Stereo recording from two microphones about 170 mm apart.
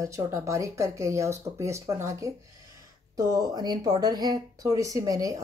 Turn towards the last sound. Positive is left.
turn(degrees=-20)  # may be behind; listen again after turning